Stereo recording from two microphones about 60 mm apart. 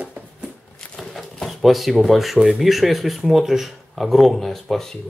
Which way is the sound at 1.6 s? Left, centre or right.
Centre.